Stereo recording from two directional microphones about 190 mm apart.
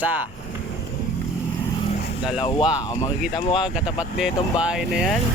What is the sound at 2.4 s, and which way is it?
Speech, 20° left (ahead or behind).